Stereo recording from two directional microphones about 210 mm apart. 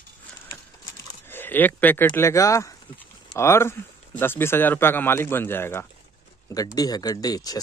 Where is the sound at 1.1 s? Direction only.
10° left (ahead or behind).